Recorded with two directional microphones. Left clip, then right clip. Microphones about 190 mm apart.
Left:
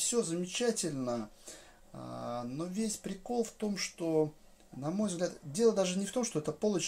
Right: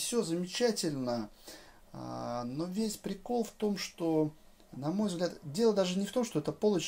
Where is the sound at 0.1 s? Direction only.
10° right (ahead or behind).